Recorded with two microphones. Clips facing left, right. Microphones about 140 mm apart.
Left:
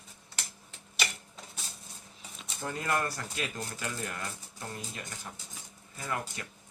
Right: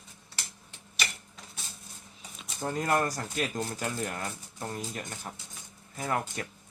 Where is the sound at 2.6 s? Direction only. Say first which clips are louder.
Right 4 dB; 35° right (ahead or behind).